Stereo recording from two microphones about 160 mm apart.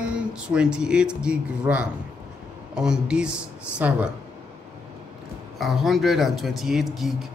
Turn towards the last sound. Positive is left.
turn(degrees=0)  # may be behind; listen again after turning